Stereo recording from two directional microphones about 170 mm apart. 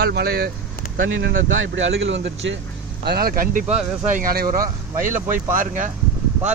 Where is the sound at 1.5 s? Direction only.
90° right.